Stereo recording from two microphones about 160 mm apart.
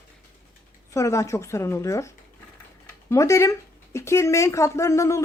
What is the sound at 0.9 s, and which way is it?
Speech, 20° left (ahead or behind).